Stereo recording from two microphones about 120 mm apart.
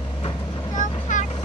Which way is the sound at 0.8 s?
90° left.